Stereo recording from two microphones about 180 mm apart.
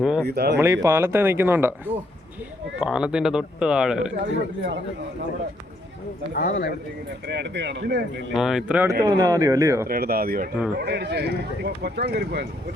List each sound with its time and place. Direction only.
0.0 s a sound: 5° right (ahead or behind)
0.3 s speech: 65° right (ahead or behind)
0.6 s speech: 15° right (ahead or behind)
2.8 s a man's voice: 5° right (ahead or behind)
4.2 s speech: 75° right (ahead or behind)
6.3 s speech: 55° left (ahead or behind)
7.3 s speech: 70° right (ahead or behind)
8.4 s a man's voice: centre (ahead or behind)
9.0 s speech: 20° right (ahead or behind)
9.9 s speech: 55° right (ahead or behind)
10.8 s speech: 70° right (ahead or behind)